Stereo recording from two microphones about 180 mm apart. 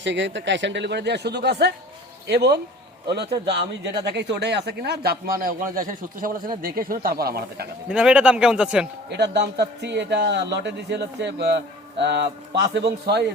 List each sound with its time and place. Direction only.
0.0 s a man's voice: 85° right; by 2.6 s 65° right (ahead or behind)
3.8 s speech: 70° right (ahead or behind)
7.9 s speech: 5° right (ahead or behind)
9.0 s a man's voice: 70° right (ahead or behind)